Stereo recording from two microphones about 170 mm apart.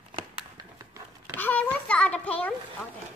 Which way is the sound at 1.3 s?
10° left (ahead or behind).